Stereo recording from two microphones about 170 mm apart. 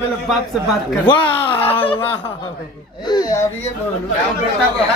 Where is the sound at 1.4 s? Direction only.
10° left (ahead or behind).